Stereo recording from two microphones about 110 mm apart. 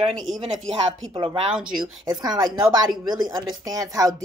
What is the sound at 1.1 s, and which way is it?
Speech, 60° right (ahead or behind).